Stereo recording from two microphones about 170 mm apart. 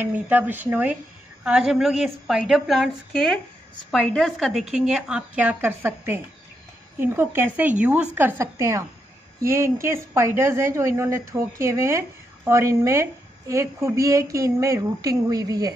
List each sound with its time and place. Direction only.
0.0 s a woman's voice: 10° right (ahead or behind)
3.9 s a woman's voice: 5° left (ahead or behind); by 15.7 s 20° right (ahead or behind)